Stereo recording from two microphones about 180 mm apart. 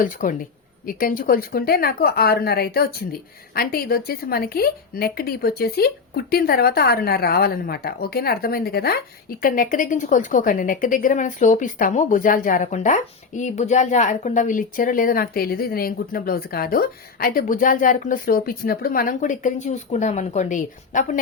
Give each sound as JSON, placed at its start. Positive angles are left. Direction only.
{"t": 0.0, "sound": "a woman's voice", "side_deg": 50}